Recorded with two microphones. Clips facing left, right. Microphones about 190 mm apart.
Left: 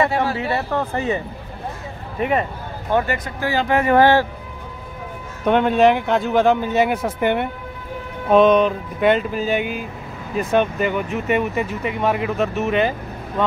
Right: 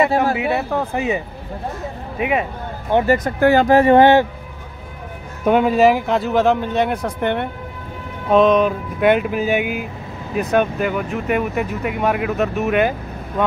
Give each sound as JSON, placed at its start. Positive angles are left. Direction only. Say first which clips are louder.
{"t": 0.4, "sound": "speech", "louder": "right 2 dB", "side_deg": -5}
{"t": 3.1, "sound": "speech", "louder": "right 9 dB", "side_deg": -50}
{"t": 3.6, "sound": "speech", "louder": "right 6 dB", "side_deg": -35}
{"t": 3.9, "sound": "speech", "louder": "right 1 dB", "side_deg": -20}
{"t": 5.4, "sound": "speech", "louder": "right 1 dB", "side_deg": -5}